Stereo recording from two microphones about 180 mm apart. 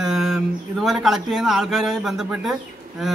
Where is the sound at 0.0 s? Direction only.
Centre (ahead or behind).